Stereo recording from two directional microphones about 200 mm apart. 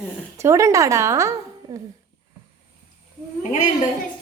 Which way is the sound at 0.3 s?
15° right (ahead or behind).